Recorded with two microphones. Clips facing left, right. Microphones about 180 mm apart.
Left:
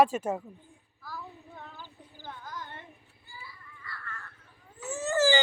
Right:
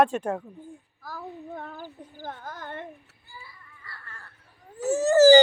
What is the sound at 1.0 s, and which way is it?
Child singing, 45° right (ahead or behind).